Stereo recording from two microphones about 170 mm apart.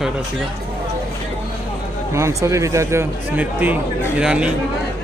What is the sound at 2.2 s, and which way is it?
A man's voice, 15° right (ahead or behind).